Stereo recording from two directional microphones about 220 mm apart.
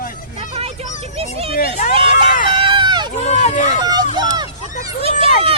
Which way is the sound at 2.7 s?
20° right (ahead or behind).